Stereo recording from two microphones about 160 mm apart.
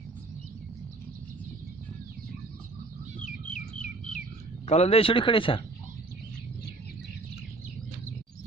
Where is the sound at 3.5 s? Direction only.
55° left (ahead or behind).